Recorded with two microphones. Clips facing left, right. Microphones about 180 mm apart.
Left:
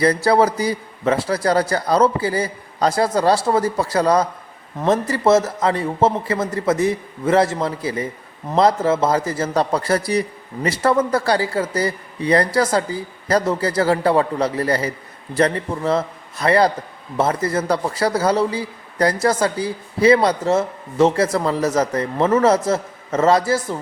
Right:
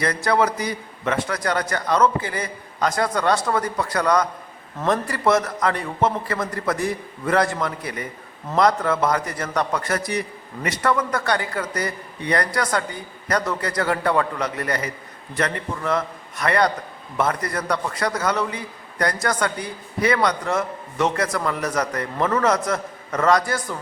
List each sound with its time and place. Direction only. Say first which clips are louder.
0.0 s a man's voice: left 5 dB; 30° left (ahead or behind)